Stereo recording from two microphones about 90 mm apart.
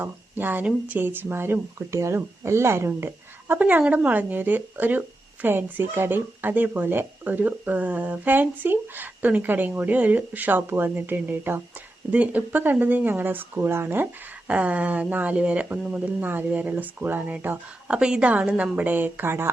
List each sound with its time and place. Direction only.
0.0 s speech: 20° right (ahead or behind)